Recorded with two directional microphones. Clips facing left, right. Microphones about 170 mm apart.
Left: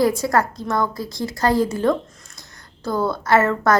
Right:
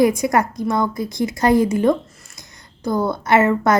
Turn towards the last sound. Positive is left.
turn(degrees=-20)  # may be behind; listen again after turning